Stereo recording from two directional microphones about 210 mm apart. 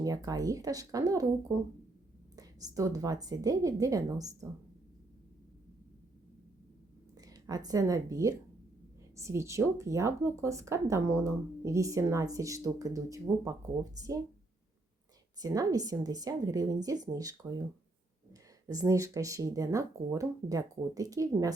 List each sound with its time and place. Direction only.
0.0 s speech: 15° right (ahead or behind)
2.3 s speech: 15° right (ahead or behind)
7.2 s a woman's voice: 15° right (ahead or behind)
15.4 s speech: 15° right (ahead or behind)
18.7 s speech: 15° right (ahead or behind)